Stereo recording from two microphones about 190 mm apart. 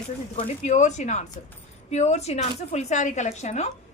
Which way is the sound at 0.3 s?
35° left (ahead or behind).